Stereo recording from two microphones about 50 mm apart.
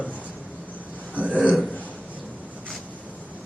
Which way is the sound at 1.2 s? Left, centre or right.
Right.